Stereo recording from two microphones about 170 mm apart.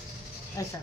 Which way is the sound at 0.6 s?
20° left (ahead or behind).